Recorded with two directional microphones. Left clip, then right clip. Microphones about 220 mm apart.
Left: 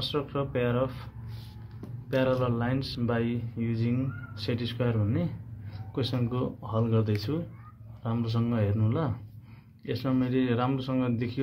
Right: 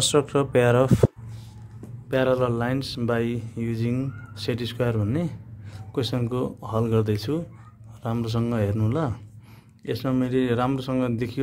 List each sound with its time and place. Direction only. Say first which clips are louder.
0.0 s speech: right 9 dB; 55° right (ahead or behind)